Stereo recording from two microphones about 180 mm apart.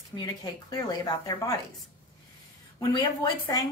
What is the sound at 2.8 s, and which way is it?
Speech, 20° left (ahead or behind).